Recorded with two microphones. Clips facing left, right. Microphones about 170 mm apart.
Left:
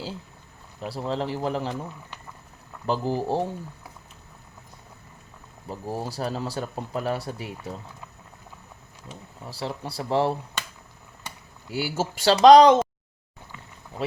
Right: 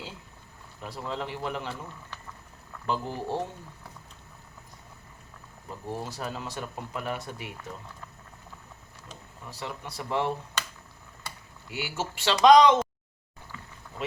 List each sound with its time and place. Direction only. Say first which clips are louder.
0.8 s speech: left 6 dB; 35° left (ahead or behind)
2.8 s speech: left 6 dB; 35° left (ahead or behind)
5.6 s speech: left 4 dB; 35° left (ahead or behind)
9.5 s speech: left 6 dB; 30° left (ahead or behind)
11.7 s speech: left 6 dB; 35° left (ahead or behind)